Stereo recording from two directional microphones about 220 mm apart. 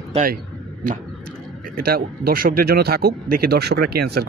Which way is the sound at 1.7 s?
45° right (ahead or behind).